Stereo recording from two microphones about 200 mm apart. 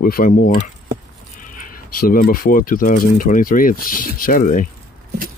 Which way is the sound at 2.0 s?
45° left (ahead or behind).